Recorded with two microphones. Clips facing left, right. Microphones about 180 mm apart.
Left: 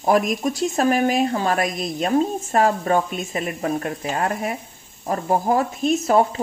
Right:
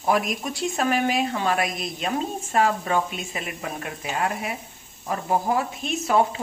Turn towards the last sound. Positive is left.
turn(degrees=40)  # may be behind; listen again after turning